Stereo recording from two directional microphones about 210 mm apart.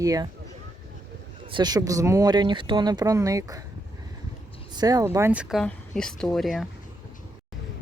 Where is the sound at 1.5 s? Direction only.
20° right (ahead or behind).